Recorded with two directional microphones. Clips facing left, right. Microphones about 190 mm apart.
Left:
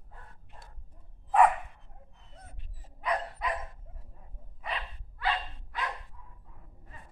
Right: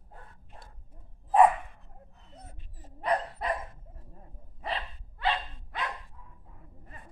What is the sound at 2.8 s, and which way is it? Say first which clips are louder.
Dog: right 3 dB; 35° right (ahead or behind).